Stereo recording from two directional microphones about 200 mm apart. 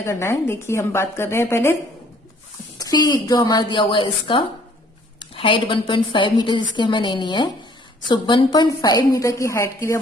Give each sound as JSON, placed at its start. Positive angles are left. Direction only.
{"t": 0.0, "sound": "a woman's voice", "side_deg": 15}
{"t": 2.8, "sound": "a woman's voice", "side_deg": 20}